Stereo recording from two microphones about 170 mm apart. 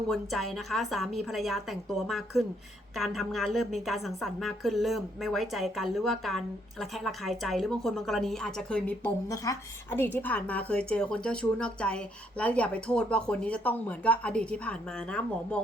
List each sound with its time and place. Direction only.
0.1 s a woman's voice: centre (ahead or behind)
9.3 s a woman's voice: 20° left (ahead or behind)